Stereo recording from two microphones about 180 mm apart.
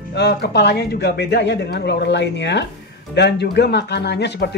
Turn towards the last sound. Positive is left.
turn(degrees=70)  # may be behind; listen again after turning